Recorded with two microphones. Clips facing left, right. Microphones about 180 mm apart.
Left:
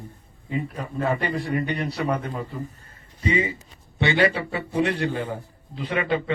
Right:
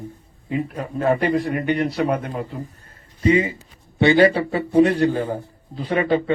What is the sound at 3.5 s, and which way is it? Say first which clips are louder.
A man's voice: right 7 dB; 35° right (ahead or behind).